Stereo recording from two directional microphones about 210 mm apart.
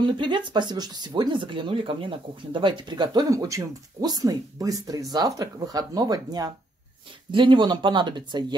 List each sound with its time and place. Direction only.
0.0 s speech: 20° right (ahead or behind)